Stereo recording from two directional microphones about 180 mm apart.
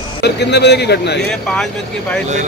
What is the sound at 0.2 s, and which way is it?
A man's voice, 70° left (ahead or behind).